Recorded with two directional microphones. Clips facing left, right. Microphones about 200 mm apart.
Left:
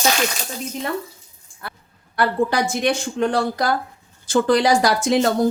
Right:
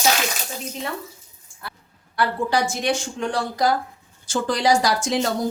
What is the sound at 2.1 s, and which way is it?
Speech, 55° left (ahead or behind).